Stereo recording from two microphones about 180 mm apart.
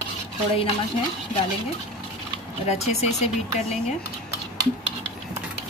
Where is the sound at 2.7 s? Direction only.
35° left (ahead or behind).